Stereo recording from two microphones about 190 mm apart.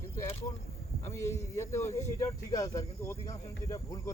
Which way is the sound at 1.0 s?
15° left (ahead or behind).